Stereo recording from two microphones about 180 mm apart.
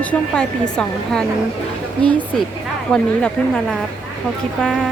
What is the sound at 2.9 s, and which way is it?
A woman's voice, 5° left (ahead or behind).